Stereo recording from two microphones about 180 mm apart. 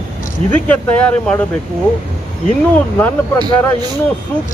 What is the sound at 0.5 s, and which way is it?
Speech, 5° left (ahead or behind).